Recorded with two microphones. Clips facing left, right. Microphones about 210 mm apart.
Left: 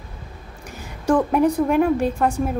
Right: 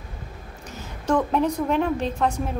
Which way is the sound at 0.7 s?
10° left (ahead or behind).